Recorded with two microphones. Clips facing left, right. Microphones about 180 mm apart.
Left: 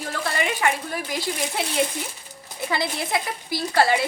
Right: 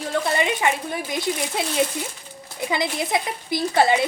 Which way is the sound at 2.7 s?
20° right (ahead or behind).